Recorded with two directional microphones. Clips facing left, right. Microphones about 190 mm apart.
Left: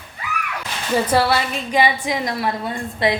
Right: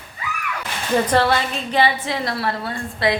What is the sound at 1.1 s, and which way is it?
A woman's voice, 10° left (ahead or behind).